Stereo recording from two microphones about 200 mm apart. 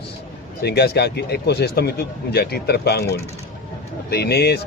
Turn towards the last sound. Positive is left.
turn(degrees=55)  # may be behind; listen again after turning